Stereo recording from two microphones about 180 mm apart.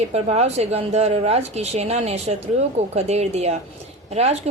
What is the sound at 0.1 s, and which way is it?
Speech, 35° right (ahead or behind).